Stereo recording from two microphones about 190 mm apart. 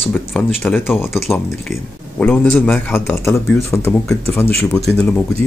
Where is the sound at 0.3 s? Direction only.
10° left (ahead or behind).